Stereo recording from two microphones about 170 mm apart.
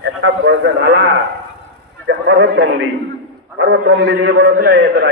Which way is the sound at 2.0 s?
90° right.